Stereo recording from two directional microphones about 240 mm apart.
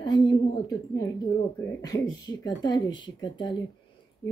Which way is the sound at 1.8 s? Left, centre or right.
Centre.